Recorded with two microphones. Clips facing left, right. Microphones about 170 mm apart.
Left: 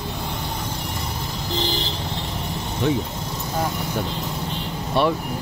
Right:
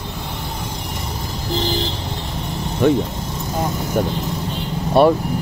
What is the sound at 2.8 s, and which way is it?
Speech, 55° right (ahead or behind).